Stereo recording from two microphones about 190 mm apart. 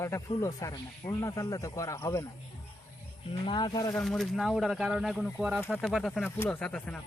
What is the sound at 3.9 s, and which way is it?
Speech, centre (ahead or behind).